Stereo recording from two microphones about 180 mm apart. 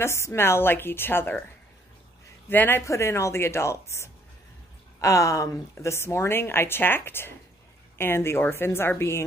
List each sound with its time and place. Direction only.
0.0 s a woman's voice: 15° left (ahead or behind)
2.5 s a woman's voice: 10° left (ahead or behind)